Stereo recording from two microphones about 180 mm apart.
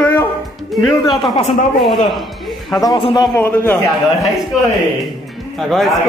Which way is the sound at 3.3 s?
10° left (ahead or behind).